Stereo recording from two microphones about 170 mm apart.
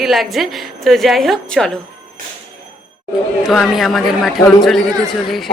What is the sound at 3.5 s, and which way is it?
A woman's voice, centre (ahead or behind).